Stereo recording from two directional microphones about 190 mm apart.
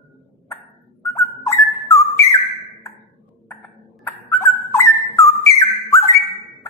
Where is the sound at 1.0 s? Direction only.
15° left (ahead or behind).